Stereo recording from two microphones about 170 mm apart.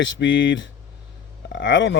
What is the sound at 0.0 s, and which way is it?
Speech, 90° left.